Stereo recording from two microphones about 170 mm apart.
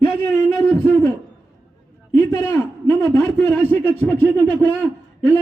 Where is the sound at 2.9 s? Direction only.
15° left (ahead or behind).